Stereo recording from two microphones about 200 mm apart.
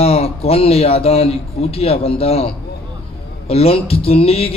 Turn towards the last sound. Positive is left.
turn(degrees=30)  # may be behind; listen again after turning